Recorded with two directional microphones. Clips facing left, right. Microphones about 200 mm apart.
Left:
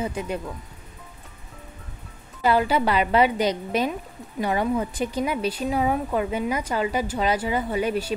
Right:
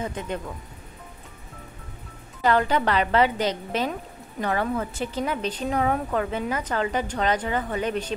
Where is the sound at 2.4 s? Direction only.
10° left (ahead or behind).